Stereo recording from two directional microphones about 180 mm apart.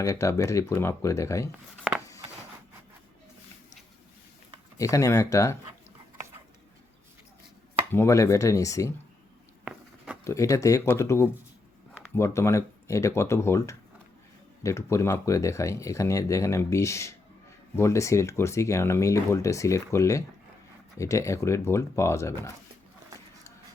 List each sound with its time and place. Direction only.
0.0 s speech: 15° left (ahead or behind)
1.9 s a sound: centre (ahead or behind)
4.8 s speech: 20° left (ahead or behind)
7.9 s speech: 15° left (ahead or behind)
10.2 s speech: 15° left (ahead or behind)